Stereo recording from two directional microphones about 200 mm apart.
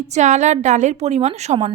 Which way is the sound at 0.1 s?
35° right (ahead or behind).